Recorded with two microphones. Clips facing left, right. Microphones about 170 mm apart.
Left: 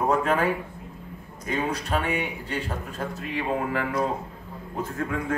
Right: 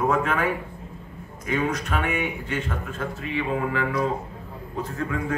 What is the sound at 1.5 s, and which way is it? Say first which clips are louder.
A man's voice: right 1 dB; 30° left (ahead or behind).